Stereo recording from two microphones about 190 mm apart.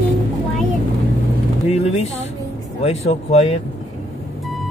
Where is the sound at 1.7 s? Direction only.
35° left (ahead or behind).